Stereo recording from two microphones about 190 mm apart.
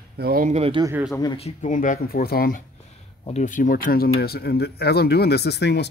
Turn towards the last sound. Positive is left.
turn(degrees=65)  # may be behind; listen again after turning